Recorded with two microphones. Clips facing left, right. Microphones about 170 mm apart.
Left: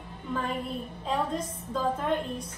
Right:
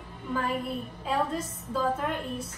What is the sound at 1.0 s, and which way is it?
A man's voice, 5° right (ahead or behind).